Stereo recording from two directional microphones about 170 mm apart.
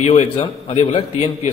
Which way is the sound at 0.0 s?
40° left (ahead or behind).